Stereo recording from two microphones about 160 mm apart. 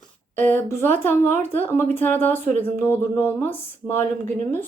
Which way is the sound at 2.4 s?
50° right (ahead or behind).